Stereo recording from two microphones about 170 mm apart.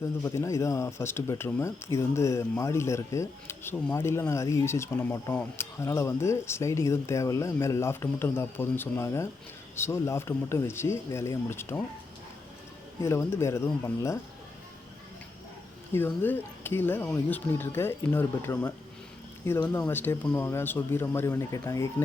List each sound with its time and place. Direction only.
0.2 s speech: 15° left (ahead or behind)
13.0 s speech: 15° left (ahead or behind)
15.9 s speech: 15° left (ahead or behind)